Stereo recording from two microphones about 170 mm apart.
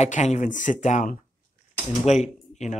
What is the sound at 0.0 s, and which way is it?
A man's voice, 40° left (ahead or behind).